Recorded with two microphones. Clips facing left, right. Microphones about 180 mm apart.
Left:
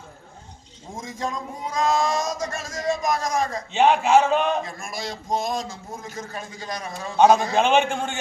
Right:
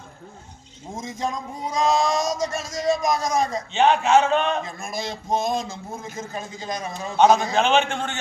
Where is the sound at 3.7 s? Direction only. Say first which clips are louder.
Left 1 dB; 10° left (ahead or behind).